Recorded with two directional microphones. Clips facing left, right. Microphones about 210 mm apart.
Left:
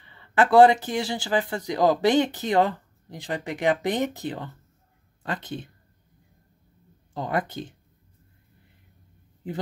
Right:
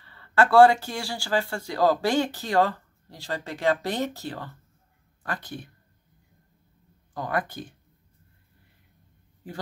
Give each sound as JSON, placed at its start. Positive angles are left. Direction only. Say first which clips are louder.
{"t": 0.0, "sound": "speech", "louder": "even", "side_deg": 15}
{"t": 7.2, "sound": "speech", "louder": "left 2 dB", "side_deg": 25}
{"t": 9.4, "sound": "a man's voice", "louder": "left 6 dB", "side_deg": 20}